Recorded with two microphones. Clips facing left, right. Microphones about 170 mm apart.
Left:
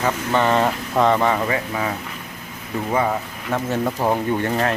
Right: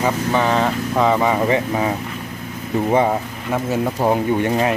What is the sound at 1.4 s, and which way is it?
Speech, 25° right (ahead or behind).